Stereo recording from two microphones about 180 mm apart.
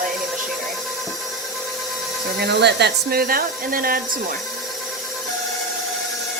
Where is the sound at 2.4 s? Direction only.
70° right (ahead or behind); by 4.0 s 55° right (ahead or behind).